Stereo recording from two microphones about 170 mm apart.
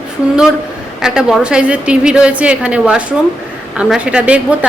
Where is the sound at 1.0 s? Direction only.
5° right (ahead or behind).